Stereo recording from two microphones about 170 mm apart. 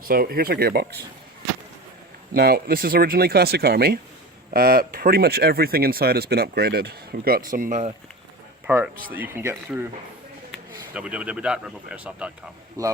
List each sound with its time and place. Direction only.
0.1 s speech: 60° right (ahead or behind)
2.3 s speech: 65° right (ahead or behind)
7.5 s speech: 50° right (ahead or behind)
8.6 s speech: 10° right (ahead or behind)